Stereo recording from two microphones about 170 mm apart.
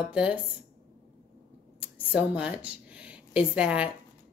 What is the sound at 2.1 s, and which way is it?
A woman's voice, 5° right (ahead or behind).